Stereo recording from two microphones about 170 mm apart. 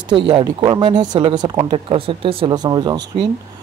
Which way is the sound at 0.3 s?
30° right (ahead or behind).